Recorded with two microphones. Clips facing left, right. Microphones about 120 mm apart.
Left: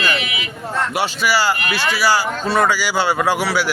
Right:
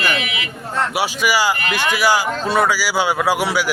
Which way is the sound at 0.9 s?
10° right (ahead or behind).